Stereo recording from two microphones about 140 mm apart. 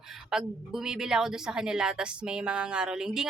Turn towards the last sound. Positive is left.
turn(degrees=-5)  # may be behind; listen again after turning